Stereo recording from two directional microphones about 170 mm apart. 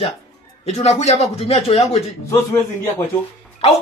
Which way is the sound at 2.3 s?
15° left (ahead or behind).